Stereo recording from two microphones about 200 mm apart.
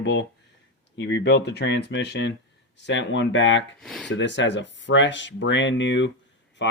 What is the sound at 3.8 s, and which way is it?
Speech, centre (ahead or behind).